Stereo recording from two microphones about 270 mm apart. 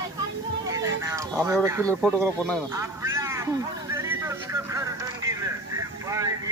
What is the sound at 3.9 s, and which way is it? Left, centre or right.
Vehicle, centre.